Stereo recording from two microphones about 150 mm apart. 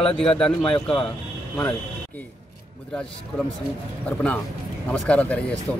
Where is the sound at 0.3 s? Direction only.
5° left (ahead or behind).